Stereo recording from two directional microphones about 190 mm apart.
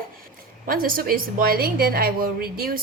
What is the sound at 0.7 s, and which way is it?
A woman's voice, 50° right (ahead or behind).